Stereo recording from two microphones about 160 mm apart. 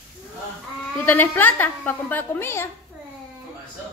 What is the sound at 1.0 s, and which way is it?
A woman's voice, 15° left (ahead or behind).